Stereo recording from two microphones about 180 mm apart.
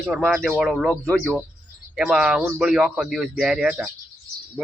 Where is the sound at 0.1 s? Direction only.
Centre (ahead or behind).